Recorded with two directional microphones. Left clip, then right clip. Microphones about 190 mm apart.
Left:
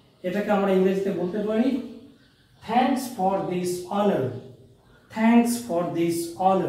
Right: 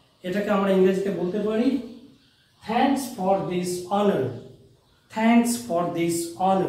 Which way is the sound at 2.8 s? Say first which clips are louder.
Right 2 dB; centre (ahead or behind).